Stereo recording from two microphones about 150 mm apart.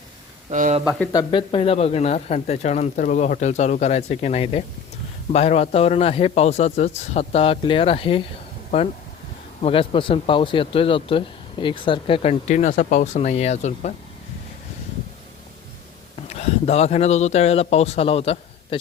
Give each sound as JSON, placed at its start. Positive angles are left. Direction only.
{"t": 0.5, "sound": "speech", "side_deg": -60}
{"t": 1.1, "sound": "speech", "side_deg": 30}
{"t": 9.6, "sound": "speech", "side_deg": 35}
{"t": 16.3, "sound": "speech", "side_deg": 45}